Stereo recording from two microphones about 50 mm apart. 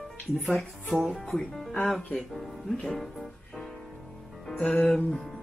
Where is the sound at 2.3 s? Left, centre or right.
Centre.